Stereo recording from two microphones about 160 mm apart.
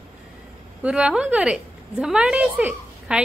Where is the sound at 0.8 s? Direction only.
5° right (ahead or behind).